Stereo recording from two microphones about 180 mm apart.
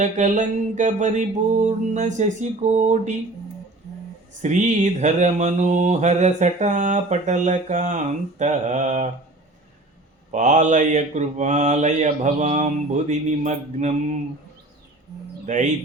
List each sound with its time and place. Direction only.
0.0 s speech: 40° right (ahead or behind)
1.6 s mantra: 40° right (ahead or behind)
4.4 s mantra: 40° right (ahead or behind)
10.3 s mantra: 45° right (ahead or behind)
15.4 s speech: 40° right (ahead or behind)